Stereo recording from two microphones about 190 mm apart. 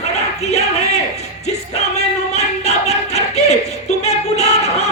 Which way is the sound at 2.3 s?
35° left (ahead or behind).